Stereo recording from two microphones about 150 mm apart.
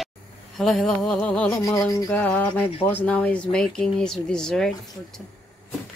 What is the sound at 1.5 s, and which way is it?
Speech, 20° left (ahead or behind).